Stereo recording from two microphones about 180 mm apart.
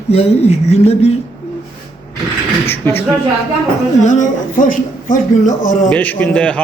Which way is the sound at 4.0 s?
45° left (ahead or behind).